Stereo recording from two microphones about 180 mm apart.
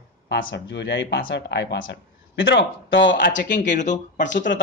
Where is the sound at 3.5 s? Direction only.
45° left (ahead or behind).